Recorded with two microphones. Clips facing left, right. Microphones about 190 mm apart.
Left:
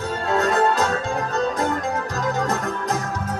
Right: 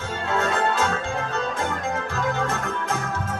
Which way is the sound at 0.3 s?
40° left (ahead or behind).